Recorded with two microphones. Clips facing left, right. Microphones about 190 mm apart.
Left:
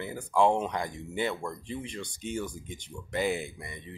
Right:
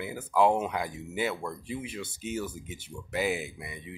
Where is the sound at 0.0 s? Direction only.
5° right (ahead or behind).